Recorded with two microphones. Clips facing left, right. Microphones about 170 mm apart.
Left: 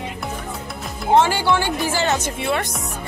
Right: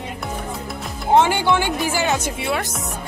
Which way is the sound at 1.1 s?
20° right (ahead or behind).